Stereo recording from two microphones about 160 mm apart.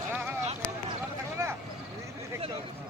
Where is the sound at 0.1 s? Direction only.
10° right (ahead or behind).